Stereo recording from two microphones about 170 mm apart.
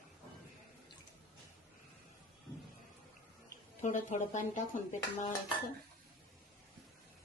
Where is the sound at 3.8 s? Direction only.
45° left (ahead or behind).